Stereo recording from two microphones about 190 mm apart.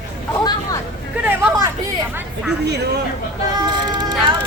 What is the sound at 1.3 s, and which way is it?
Chatter, 10° right (ahead or behind).